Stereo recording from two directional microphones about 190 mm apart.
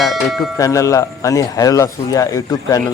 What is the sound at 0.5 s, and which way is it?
Speech, 15° left (ahead or behind).